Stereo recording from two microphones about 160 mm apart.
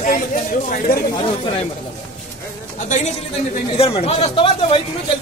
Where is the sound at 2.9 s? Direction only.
45° left (ahead or behind).